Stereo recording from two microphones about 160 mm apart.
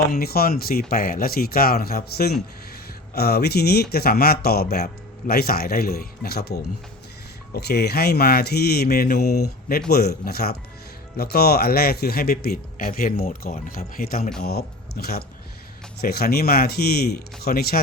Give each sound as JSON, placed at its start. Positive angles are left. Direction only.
{"t": 0.1, "sound": "speech", "side_deg": 70}